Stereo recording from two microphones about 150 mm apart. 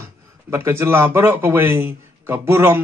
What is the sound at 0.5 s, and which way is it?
A man's voice, 15° right (ahead or behind).